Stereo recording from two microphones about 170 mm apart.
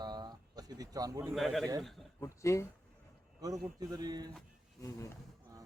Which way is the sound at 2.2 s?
15° left (ahead or behind).